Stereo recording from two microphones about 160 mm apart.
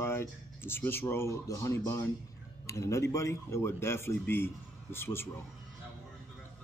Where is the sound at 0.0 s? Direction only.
15° left (ahead or behind).